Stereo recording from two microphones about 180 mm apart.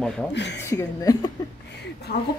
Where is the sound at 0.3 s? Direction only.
75° left (ahead or behind).